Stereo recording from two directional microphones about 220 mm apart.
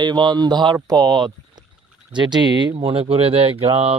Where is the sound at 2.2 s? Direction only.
20° right (ahead or behind).